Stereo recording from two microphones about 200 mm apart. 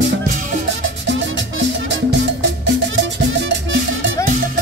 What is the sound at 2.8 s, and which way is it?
Music, 65° right (ahead or behind).